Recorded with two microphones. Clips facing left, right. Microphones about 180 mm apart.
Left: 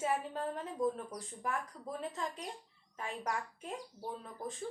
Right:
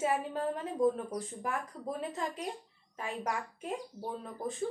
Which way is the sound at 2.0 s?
5° right (ahead or behind).